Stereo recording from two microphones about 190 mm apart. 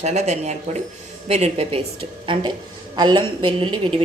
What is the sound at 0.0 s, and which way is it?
A woman's voice, 35° right (ahead or behind).